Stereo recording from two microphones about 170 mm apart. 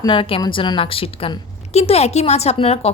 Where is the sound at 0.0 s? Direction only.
30° left (ahead or behind).